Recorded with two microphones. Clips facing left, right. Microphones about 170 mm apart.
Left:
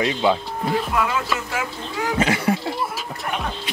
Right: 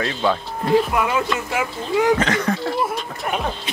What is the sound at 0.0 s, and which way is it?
Speech, 20° left (ahead or behind).